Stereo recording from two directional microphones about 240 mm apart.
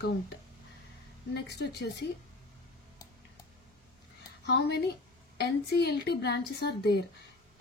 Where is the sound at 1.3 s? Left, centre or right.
Left.